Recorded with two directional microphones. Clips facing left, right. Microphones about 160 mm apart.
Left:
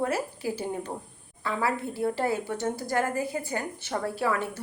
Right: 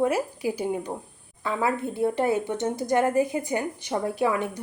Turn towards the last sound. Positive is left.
turn(degrees=-15)  # may be behind; listen again after turning